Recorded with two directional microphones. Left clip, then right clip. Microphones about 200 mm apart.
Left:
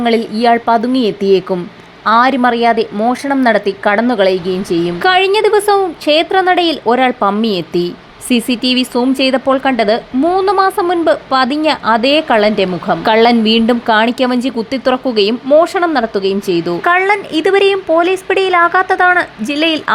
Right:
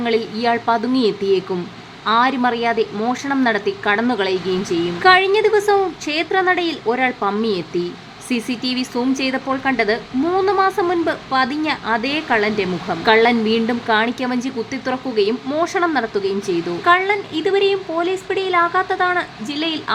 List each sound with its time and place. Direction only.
0.0 s speech: 25° left (ahead or behind)